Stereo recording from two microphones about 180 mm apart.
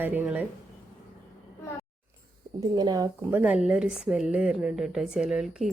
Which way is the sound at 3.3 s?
5° right (ahead or behind).